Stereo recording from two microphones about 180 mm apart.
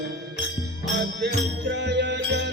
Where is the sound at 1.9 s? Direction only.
70° right (ahead or behind).